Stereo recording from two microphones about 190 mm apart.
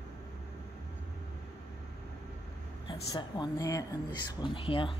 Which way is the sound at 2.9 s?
25° left (ahead or behind).